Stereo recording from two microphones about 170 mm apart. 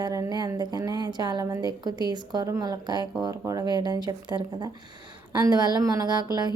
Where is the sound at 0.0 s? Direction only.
20° right (ahead or behind).